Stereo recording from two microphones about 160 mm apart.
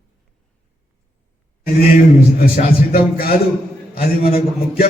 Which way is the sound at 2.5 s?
65° left (ahead or behind).